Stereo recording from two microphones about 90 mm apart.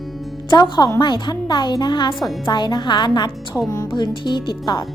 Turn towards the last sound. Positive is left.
turn(degrees=50)  # may be behind; listen again after turning